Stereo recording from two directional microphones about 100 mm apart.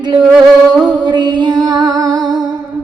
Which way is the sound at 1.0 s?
45° right (ahead or behind).